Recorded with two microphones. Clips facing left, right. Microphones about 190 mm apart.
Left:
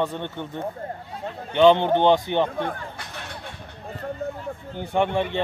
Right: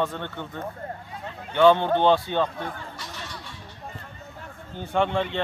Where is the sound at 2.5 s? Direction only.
55° left (ahead or behind).